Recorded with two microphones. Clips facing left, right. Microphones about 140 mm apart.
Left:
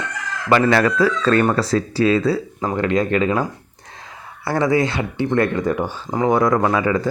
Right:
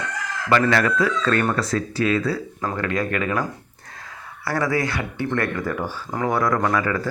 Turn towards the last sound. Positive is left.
turn(degrees=20)  # may be behind; listen again after turning